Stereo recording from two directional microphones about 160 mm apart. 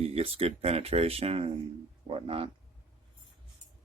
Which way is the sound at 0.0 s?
40° right (ahead or behind).